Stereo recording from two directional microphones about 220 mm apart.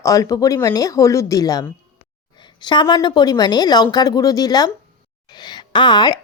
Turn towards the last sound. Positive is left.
turn(degrees=20)  # may be behind; listen again after turning